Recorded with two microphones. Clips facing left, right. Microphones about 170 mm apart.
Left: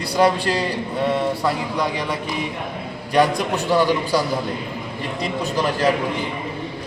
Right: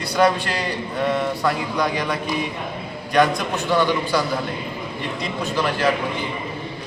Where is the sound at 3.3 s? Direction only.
35° left (ahead or behind).